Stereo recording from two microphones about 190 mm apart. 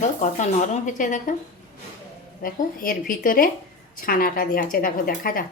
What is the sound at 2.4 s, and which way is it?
Speech, 50° left (ahead or behind).